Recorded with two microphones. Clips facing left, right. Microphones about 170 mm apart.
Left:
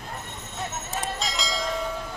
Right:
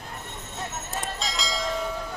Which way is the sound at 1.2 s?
Centre (ahead or behind).